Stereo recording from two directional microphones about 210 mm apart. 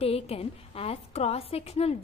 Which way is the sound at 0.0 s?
30° left (ahead or behind).